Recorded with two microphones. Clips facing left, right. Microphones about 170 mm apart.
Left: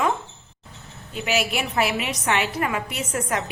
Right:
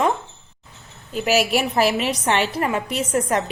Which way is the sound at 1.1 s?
40° right (ahead or behind).